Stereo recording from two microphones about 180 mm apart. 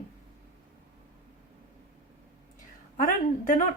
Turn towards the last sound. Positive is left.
turn(degrees=45)  # may be behind; listen again after turning